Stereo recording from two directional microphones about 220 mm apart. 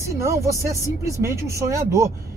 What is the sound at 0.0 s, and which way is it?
Speech, 15° right (ahead or behind).